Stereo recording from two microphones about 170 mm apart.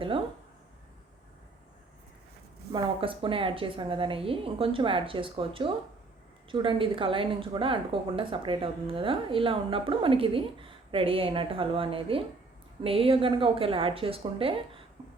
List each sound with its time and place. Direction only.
2.7 s a woman's voice: 30° right (ahead or behind)